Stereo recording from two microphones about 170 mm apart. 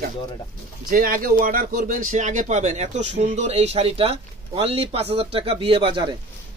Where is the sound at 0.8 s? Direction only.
55° right (ahead or behind).